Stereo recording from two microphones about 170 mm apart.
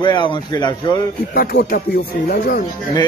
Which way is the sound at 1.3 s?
70° left (ahead or behind).